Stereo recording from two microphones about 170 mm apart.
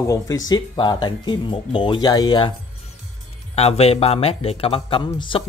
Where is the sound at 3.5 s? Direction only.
35° left (ahead or behind).